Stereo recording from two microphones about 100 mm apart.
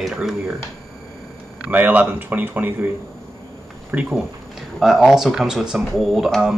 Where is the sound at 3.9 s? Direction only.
15° right (ahead or behind).